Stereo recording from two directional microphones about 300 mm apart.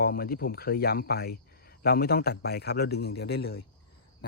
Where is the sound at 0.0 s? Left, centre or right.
Left.